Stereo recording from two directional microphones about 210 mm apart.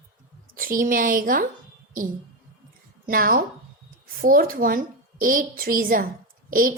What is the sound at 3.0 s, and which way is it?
A woman's voice, 45° right (ahead or behind).